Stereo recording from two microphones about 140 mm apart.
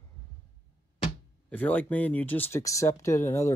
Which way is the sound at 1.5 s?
10° left (ahead or behind).